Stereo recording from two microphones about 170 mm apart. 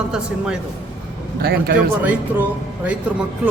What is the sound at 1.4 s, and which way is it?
Speech, 65° right (ahead or behind).